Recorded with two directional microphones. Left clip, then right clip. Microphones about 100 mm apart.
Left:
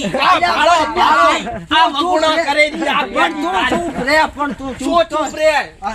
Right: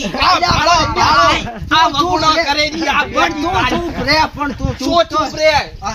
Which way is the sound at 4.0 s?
5° left (ahead or behind).